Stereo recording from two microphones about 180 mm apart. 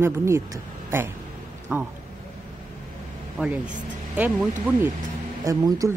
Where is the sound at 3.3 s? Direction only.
5° right (ahead or behind).